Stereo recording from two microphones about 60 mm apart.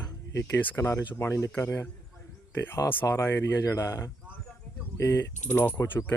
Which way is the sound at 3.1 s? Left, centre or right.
Left.